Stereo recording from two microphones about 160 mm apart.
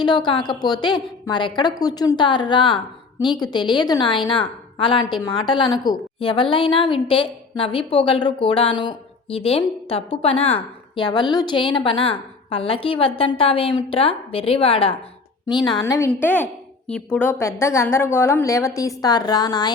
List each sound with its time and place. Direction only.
0.0 s a woman's voice: 30° left (ahead or behind)
16.0 s a woman's voice: 15° left (ahead or behind)